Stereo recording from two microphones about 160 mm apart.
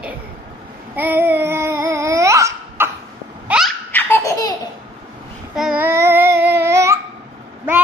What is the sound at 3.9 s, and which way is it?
Laughter, 15° left (ahead or behind).